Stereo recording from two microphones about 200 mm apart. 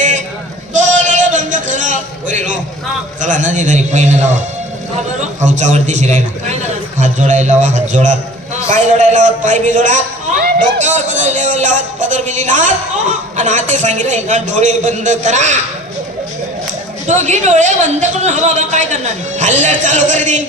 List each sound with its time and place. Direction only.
0.7 s a sound: 40° right (ahead or behind)
3.2 s a man's voice: 40° right (ahead or behind)
17.1 s a man's voice: 35° right (ahead or behind)